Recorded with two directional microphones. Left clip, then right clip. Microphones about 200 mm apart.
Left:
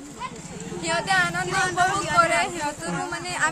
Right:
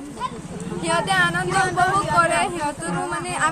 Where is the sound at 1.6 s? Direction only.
25° left (ahead or behind).